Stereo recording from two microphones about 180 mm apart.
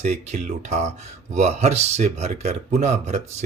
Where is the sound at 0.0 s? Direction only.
40° right (ahead or behind).